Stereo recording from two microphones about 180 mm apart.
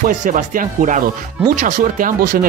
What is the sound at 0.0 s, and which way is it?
Speech, 45° right (ahead or behind).